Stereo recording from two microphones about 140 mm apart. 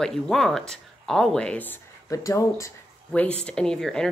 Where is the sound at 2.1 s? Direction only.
25° left (ahead or behind).